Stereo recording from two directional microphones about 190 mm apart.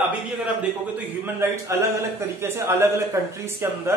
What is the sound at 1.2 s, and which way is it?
Speech, 15° right (ahead or behind).